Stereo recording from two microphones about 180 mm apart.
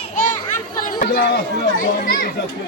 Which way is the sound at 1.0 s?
60° left (ahead or behind).